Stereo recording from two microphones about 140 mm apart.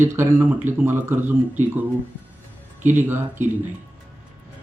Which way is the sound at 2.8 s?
15° right (ahead or behind).